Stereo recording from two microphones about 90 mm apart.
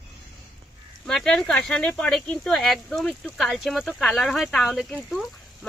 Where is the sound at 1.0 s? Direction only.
5° left (ahead or behind).